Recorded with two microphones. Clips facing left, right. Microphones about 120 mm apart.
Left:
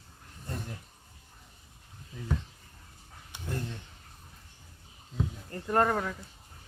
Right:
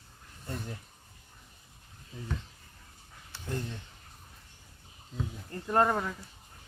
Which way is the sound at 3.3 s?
15° left (ahead or behind).